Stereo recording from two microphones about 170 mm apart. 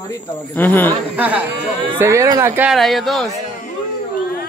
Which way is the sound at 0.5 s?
10° left (ahead or behind).